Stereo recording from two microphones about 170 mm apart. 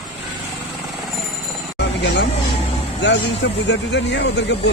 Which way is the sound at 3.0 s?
90° left.